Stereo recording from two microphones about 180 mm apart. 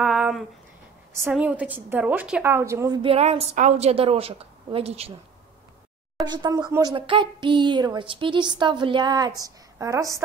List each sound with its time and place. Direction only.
0.0 s a sound: 5° right (ahead or behind)
1.3 s a woman's voice: 5° right (ahead or behind)
3.0 s a woman's voice: 35° right (ahead or behind)
6.2 s speech: 25° right (ahead or behind)